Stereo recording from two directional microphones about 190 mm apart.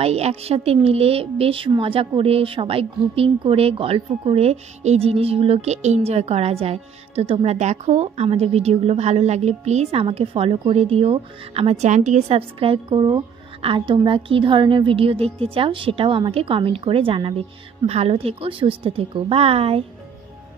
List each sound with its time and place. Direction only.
0.0 s speech: 35° right (ahead or behind)